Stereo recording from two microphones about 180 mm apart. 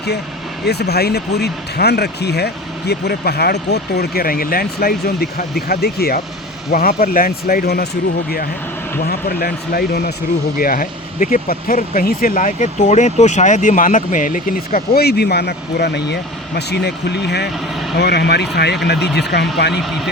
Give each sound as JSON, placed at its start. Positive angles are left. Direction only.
{"t": 0.6, "sound": "speech", "side_deg": 65}
{"t": 9.0, "sound": "speech", "side_deg": 60}